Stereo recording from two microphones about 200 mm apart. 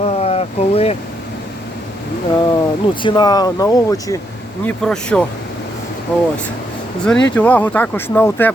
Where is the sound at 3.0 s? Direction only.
20° left (ahead or behind).